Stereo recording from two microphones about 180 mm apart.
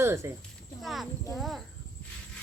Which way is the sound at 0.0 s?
15° right (ahead or behind).